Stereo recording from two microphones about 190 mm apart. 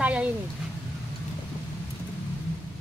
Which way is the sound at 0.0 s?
5° right (ahead or behind).